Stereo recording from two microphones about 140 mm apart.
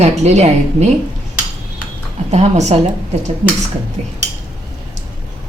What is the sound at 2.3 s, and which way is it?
Speech, 50° right (ahead or behind).